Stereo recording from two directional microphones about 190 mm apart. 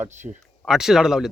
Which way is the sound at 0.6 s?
Centre (ahead or behind).